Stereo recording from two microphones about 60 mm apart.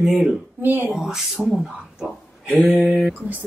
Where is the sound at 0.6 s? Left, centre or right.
Right.